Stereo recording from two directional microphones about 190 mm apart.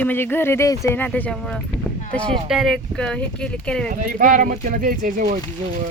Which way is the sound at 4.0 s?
45° right (ahead or behind).